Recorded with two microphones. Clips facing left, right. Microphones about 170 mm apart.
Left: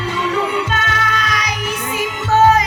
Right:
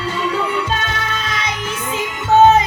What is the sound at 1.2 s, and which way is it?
Music, 25° right (ahead or behind).